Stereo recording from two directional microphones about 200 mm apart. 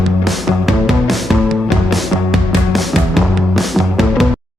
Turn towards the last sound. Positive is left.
turn(degrees=0)  # may be behind; listen again after turning